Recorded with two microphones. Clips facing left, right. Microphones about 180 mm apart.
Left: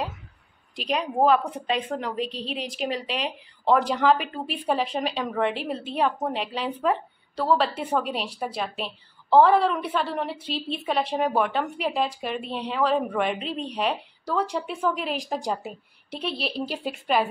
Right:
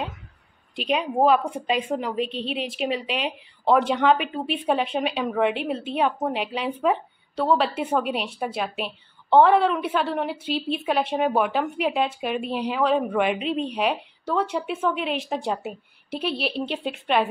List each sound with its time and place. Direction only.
0.7 s a woman's voice: centre (ahead or behind)
13.4 s a woman's voice: 35° left (ahead or behind)
13.7 s a woman's voice: 5° right (ahead or behind)